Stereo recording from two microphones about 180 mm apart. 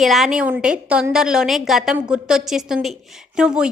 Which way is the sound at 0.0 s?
Centre (ahead or behind).